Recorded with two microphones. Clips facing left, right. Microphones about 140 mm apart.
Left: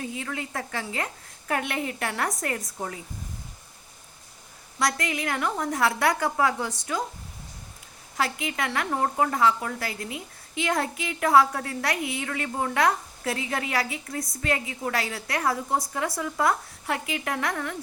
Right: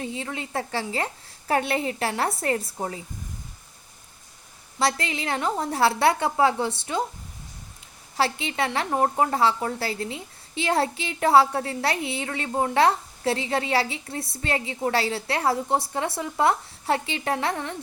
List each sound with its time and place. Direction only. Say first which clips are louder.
0.0 s a woman's voice: right 1 dB; 25° right (ahead or behind)
4.8 s a woman's voice: right 2 dB; 30° right (ahead or behind)
8.1 s a woman's voice: right 3 dB; 30° right (ahead or behind)